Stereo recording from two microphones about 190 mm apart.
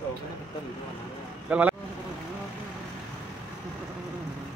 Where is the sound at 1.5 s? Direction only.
5° right (ahead or behind).